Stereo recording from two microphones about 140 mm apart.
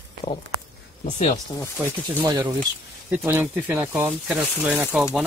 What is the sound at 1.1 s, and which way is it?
Speech, 55° left (ahead or behind).